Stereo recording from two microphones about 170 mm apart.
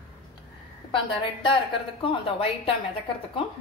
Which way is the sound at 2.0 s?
30° left (ahead or behind).